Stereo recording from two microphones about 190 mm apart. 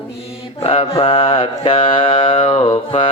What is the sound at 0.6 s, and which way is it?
Mantra, 30° left (ahead or behind).